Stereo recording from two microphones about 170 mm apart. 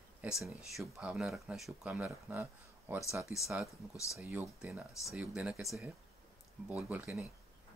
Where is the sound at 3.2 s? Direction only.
15° left (ahead or behind).